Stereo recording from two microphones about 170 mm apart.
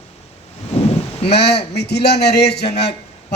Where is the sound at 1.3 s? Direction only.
75° left (ahead or behind).